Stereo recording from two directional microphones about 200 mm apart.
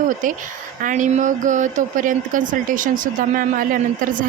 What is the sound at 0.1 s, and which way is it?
A woman's voice, 40° right (ahead or behind).